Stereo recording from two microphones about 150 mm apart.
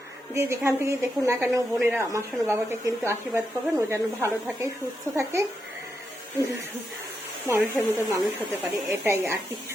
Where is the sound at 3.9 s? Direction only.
20° right (ahead or behind).